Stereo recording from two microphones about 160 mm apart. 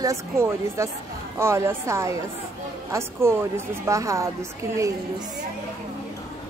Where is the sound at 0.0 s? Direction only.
15° right (ahead or behind).